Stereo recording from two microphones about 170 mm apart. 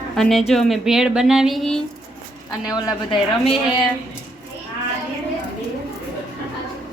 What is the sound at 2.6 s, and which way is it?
Speech, 20° left (ahead or behind).